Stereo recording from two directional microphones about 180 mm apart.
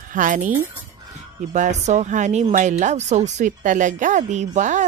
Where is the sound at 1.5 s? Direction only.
40° right (ahead or behind).